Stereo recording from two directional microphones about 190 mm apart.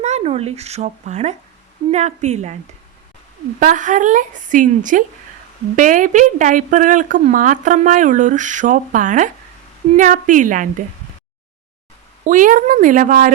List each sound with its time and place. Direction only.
0.0 s a woman's voice: 35° right (ahead or behind)
3.6 s speech: 40° right (ahead or behind)
12.2 s speech: 45° right (ahead or behind)